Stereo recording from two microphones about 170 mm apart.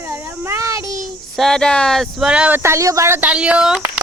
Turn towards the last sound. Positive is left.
turn(degrees=-5)  # may be behind; listen again after turning